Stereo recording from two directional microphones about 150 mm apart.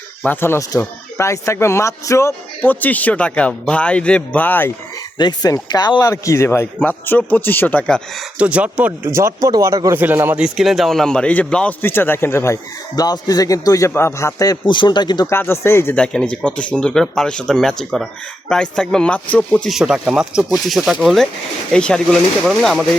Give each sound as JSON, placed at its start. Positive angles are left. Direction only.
{"t": 0.3, "sound": "speech", "side_deg": 15}
{"t": 5.1, "sound": "a man's voice", "side_deg": 25}
{"t": 8.4, "sound": "speech", "side_deg": -10}
{"t": 9.0, "sound": "a man's voice", "side_deg": -20}
{"t": 15.3, "sound": "speech", "side_deg": 15}
{"t": 19.7, "sound": "speech", "side_deg": -5}